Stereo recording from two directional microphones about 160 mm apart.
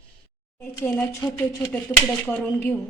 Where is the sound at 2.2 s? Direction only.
15° left (ahead or behind).